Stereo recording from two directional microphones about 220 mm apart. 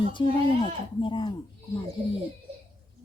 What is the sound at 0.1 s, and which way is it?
Speech, 20° left (ahead or behind).